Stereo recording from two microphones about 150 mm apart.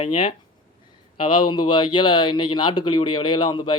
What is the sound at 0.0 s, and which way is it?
Speech, 35° left (ahead or behind).